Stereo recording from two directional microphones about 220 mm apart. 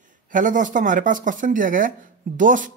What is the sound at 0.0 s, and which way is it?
Speech, 35° right (ahead or behind).